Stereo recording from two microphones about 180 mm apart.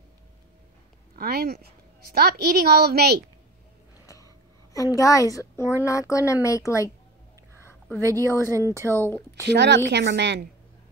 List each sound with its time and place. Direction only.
1.1 s a woman's voice: 60° right (ahead or behind)
4.0 s a sound: 20° left (ahead or behind)
4.9 s speech: 20° left (ahead or behind)
8.0 s speech: 20° right (ahead or behind)
8.9 s speech: 10° left (ahead or behind)
9.5 s a woman's voice: 70° right (ahead or behind)